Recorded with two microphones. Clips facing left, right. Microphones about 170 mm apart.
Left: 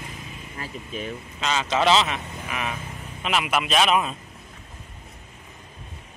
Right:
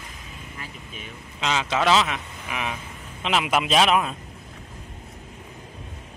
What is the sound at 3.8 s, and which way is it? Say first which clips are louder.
Speech: even; centre (ahead or behind).